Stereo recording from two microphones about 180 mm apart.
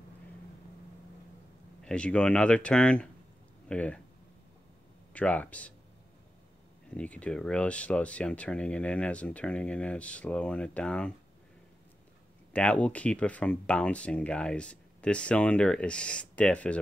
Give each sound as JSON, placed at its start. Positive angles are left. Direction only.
{"t": 1.8, "sound": "speech", "side_deg": 5}
{"t": 5.1, "sound": "speech", "side_deg": 5}
{"t": 6.9, "sound": "speech", "side_deg": 5}
{"t": 12.5, "sound": "speech", "side_deg": 5}